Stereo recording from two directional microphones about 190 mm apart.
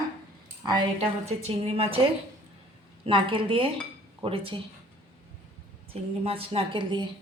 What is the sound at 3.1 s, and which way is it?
A woman's voice, 25° right (ahead or behind).